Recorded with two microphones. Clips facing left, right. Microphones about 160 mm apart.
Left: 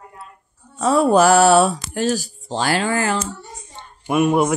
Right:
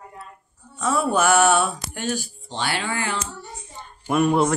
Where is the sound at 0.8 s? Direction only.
35° left (ahead or behind).